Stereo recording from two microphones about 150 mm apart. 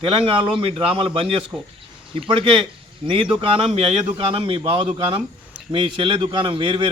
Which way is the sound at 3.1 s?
35° right (ahead or behind).